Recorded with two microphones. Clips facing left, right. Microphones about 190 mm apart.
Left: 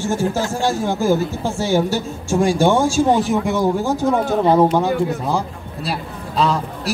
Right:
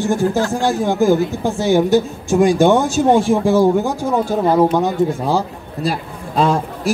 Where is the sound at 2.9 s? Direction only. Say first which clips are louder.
Right 3 dB; 30° right (ahead or behind).